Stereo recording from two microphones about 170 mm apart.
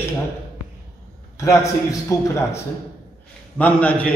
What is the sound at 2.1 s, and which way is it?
Speech, 20° left (ahead or behind).